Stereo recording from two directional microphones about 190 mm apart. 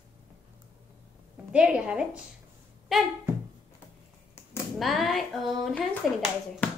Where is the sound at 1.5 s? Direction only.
5° right (ahead or behind).